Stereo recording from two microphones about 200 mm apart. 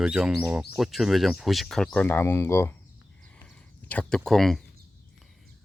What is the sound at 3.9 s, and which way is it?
Speech, 5° left (ahead or behind).